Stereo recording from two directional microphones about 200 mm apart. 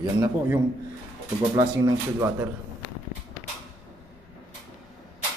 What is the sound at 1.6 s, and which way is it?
Speech, 15° right (ahead or behind).